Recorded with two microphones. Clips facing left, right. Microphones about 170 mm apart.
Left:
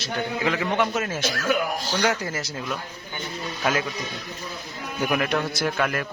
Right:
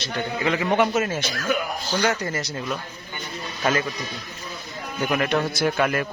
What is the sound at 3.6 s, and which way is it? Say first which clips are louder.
Speech: right 2 dB; centre (ahead or behind).